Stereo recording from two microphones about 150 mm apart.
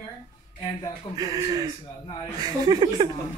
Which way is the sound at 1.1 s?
25° right (ahead or behind).